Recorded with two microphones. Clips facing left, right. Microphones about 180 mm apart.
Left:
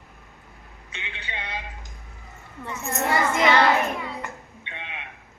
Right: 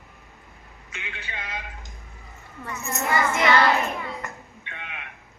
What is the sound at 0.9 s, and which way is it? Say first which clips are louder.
Speech: left 1 dB; 30° left (ahead or behind).